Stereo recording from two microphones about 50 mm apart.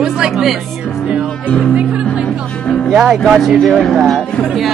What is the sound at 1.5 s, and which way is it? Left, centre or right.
Speech, centre.